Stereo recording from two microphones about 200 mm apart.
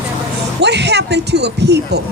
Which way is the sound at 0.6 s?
55° right (ahead or behind).